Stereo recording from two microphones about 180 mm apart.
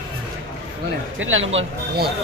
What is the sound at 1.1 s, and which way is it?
Speech, 90° right.